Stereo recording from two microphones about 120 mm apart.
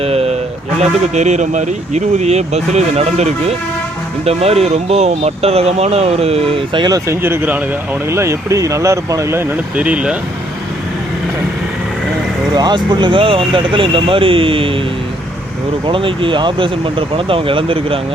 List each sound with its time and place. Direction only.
0.0 s a sound: 55° right (ahead or behind)
0.8 s speech: 70° right (ahead or behind)
6.7 s speech: 35° right (ahead or behind)
7.1 s speech: 20° right (ahead or behind)
12.5 s speech: 35° right (ahead or behind)
15.9 s speech: 45° right (ahead or behind)